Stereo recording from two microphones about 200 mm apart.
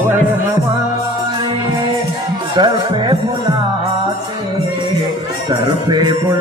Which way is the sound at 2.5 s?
20° right (ahead or behind).